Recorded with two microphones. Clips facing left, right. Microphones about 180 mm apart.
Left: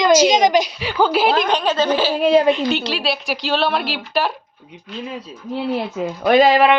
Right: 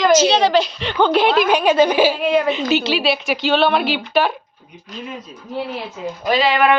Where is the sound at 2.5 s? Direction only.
Centre (ahead or behind).